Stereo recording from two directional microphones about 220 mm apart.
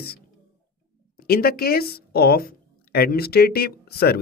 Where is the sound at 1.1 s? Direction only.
45° left (ahead or behind).